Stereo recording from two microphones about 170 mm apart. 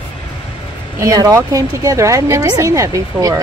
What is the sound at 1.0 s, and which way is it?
A woman's voice, 20° right (ahead or behind).